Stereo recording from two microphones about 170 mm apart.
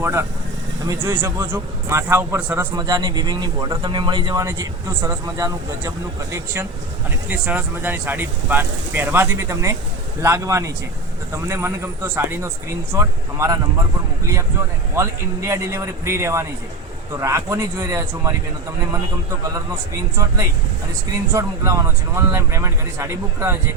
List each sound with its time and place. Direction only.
0.0 s speech: 15° right (ahead or behind)
2.7 s speech: 25° right (ahead or behind)
14.9 s speech: 15° right (ahead or behind)
20.1 s speech: 20° right (ahead or behind)